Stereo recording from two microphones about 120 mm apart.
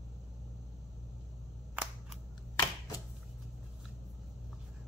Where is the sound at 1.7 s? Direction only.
15° right (ahead or behind).